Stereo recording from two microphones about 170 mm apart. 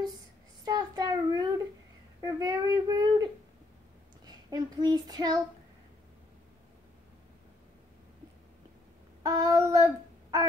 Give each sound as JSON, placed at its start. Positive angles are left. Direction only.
{"t": 0.7, "sound": "child singing", "side_deg": -25}
{"t": 2.2, "sound": "speech", "side_deg": -20}
{"t": 4.5, "sound": "child singing", "side_deg": -25}
{"t": 9.2, "sound": "child singing", "side_deg": -20}